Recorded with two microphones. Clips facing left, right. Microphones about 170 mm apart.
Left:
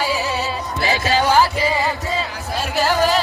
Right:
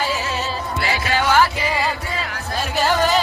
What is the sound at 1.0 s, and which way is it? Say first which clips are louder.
Music: left 1 dB; 35° left (ahead or behind).